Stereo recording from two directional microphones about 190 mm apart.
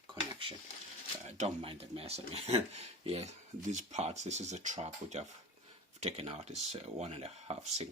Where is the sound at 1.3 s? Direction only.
30° right (ahead or behind).